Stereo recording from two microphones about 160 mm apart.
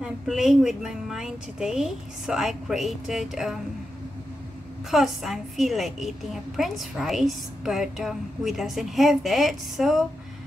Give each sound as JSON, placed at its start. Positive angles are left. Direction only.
{"t": 0.0, "sound": "a woman's voice", "side_deg": 0}
{"t": 4.9, "sound": "a woman's voice", "side_deg": 0}